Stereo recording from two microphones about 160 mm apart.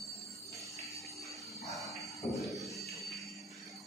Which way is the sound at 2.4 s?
Centre (ahead or behind).